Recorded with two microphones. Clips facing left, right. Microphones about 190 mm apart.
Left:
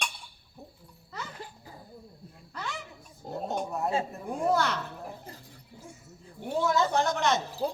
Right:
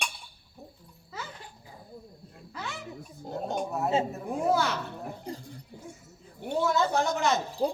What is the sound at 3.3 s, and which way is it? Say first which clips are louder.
A woman's voice: right 1 dB; centre (ahead or behind).